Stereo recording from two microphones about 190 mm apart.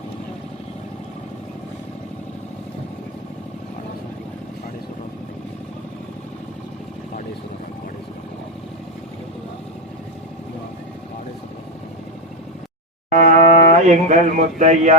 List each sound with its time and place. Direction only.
13.1 s speech: 45° right (ahead or behind)